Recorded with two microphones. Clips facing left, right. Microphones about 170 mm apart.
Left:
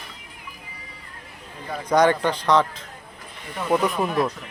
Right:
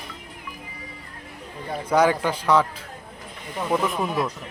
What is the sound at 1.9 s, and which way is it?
Speech, 5° right (ahead or behind).